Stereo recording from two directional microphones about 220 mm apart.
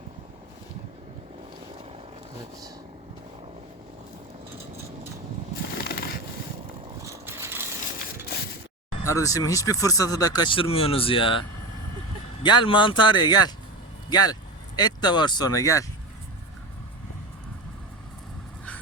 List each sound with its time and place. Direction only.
5.7 s a sound: 45° left (ahead or behind)
7.0 s vehicle: 10° right (ahead or behind)
9.0 s speech: 15° left (ahead or behind)